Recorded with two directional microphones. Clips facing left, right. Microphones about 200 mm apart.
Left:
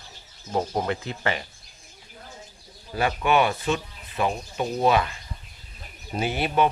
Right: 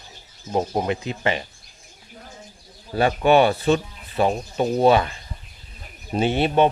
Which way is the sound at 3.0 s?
30° right (ahead or behind).